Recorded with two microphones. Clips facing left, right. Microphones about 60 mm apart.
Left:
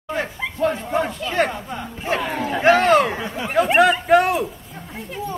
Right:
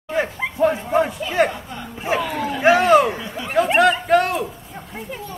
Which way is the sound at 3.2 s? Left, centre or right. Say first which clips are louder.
Left 2 dB; left.